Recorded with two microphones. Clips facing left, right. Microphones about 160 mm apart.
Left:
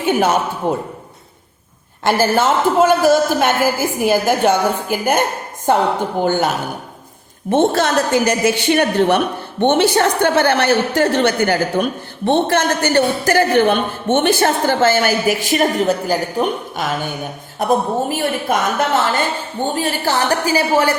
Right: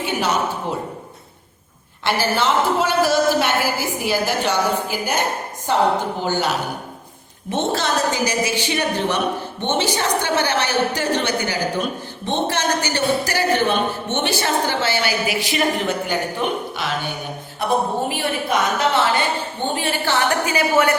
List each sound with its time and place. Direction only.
0.0 s a woman's voice: 50° left (ahead or behind)
2.0 s a woman's voice: 45° left (ahead or behind)
7.5 s a woman's voice: 55° left (ahead or behind); by 20.9 s 30° left (ahead or behind)